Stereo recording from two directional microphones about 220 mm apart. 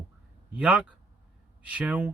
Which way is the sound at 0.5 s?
5° right (ahead or behind).